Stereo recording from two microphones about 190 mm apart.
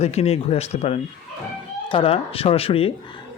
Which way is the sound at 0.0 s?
35° left (ahead or behind).